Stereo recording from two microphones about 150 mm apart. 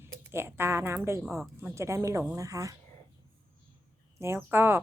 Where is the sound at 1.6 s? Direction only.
20° right (ahead or behind).